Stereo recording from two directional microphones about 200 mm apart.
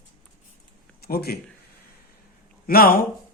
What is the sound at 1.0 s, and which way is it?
Speech, 50° left (ahead or behind).